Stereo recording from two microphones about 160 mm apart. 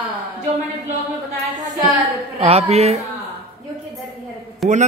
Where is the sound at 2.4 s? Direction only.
40° right (ahead or behind).